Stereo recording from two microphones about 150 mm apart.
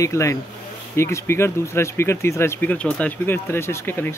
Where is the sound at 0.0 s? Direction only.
20° left (ahead or behind).